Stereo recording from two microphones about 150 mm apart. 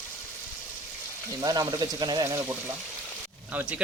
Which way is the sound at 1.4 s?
25° right (ahead or behind).